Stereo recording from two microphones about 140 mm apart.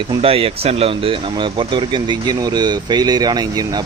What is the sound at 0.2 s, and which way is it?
Speech, 45° right (ahead or behind).